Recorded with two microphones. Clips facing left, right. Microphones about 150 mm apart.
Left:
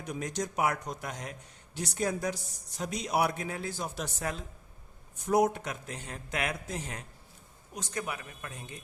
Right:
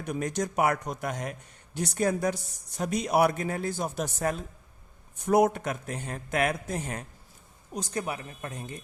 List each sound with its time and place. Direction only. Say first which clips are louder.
0.0 s a man's voice: right 5 dB; 55° right (ahead or behind)
5.2 s a man's voice: right 4 dB; 60° right (ahead or behind)
7.7 s speech: right 4 dB; 35° right (ahead or behind)